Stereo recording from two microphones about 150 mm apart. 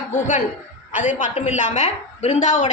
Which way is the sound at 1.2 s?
50° left (ahead or behind).